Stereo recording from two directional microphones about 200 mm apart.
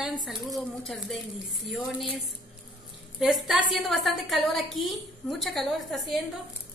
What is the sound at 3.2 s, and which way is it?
A woman's voice, centre (ahead or behind).